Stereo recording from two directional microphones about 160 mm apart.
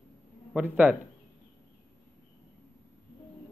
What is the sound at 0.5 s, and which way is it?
Speech, 10° right (ahead or behind).